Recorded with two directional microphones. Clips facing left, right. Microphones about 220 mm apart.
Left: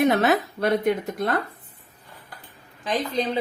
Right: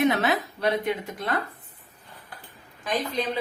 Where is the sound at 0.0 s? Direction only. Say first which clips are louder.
Left 3 dB; 45° left (ahead or behind).